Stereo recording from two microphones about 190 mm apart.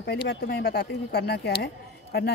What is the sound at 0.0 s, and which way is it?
Speech, 60° left (ahead or behind).